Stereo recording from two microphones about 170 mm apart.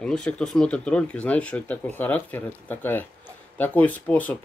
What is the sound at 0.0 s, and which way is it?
Speech, 5° left (ahead or behind).